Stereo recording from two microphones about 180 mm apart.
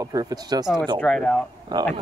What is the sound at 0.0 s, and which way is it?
Speech, 20° right (ahead or behind).